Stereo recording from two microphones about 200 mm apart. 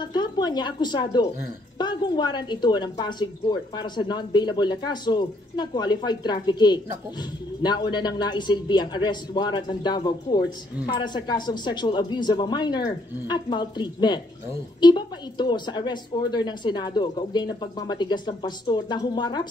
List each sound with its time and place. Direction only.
0.0 s a woman's voice: 20° left (ahead or behind)